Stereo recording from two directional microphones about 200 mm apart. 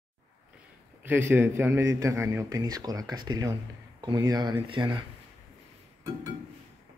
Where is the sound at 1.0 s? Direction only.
10° right (ahead or behind).